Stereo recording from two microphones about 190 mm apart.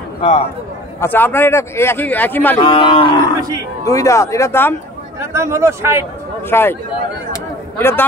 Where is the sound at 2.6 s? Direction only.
25° left (ahead or behind).